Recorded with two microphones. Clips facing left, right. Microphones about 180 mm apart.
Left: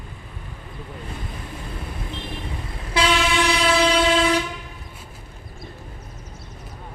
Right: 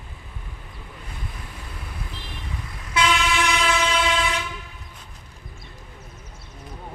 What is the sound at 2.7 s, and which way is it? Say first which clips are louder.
Train: left 2 dB; 30° left (ahead or behind).